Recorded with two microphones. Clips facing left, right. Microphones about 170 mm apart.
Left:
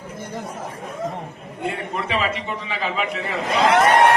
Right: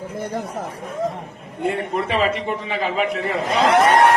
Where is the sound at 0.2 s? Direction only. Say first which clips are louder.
Right 5 dB; 60° right (ahead or behind).